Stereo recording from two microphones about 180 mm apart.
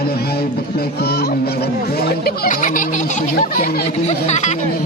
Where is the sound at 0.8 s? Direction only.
60° left (ahead or behind); by 4.6 s 40° left (ahead or behind).